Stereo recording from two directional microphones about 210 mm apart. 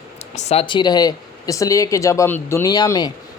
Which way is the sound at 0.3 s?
30° left (ahead or behind).